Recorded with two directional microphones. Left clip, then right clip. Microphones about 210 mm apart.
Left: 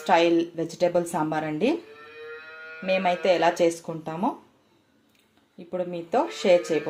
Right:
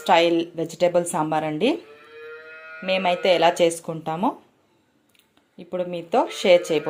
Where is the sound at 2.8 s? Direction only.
10° right (ahead or behind).